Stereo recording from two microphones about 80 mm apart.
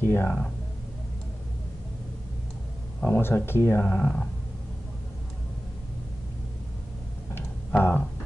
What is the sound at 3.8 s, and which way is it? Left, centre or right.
Speech, centre.